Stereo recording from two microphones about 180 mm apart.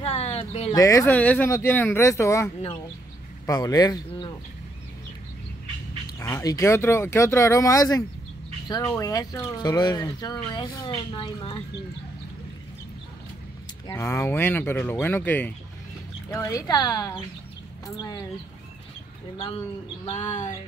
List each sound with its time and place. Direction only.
0.0 s a sound: 35° left (ahead or behind)
0.7 s speech: 15° left (ahead or behind)
6.0 s speech: 15° left (ahead or behind)
13.8 s speech: 15° left (ahead or behind)
19.3 s speech: 25° left (ahead or behind)
20.1 s a sound: 40° left (ahead or behind)